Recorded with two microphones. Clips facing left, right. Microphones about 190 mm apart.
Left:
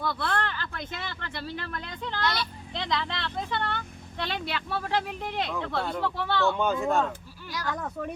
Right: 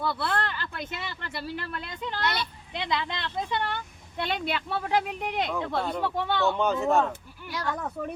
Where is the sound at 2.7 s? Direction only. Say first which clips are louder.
Even; 10° right (ahead or behind).